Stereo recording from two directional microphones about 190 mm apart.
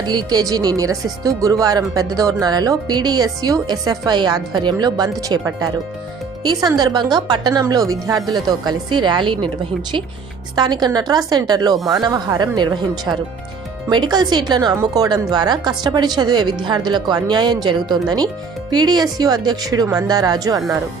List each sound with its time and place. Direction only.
0.1 s speech: 20° right (ahead or behind)
10.5 s speech: 20° right (ahead or behind)